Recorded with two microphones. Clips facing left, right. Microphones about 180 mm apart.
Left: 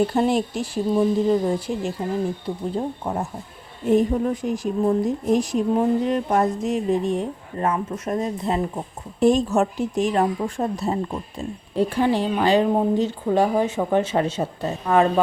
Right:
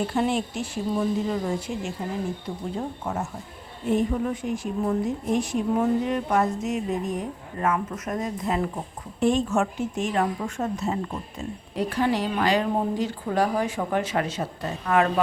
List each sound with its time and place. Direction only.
0.1 s speech: 40° left (ahead or behind)
9.2 s speech: 40° left (ahead or behind)